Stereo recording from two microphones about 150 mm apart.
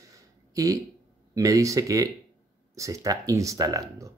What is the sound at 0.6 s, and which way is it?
Speech, 20° right (ahead or behind).